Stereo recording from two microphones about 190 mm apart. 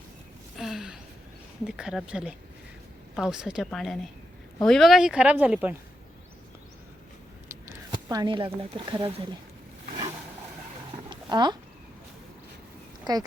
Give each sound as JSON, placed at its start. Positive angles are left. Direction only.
{"t": 0.5, "sound": "gasp", "side_deg": 0}
{"t": 1.6, "sound": "speech", "side_deg": -5}
{"t": 8.1, "sound": "speech", "side_deg": -20}
{"t": 11.1, "sound": "a sound", "side_deg": -20}
{"t": 13.1, "sound": "speech", "side_deg": -20}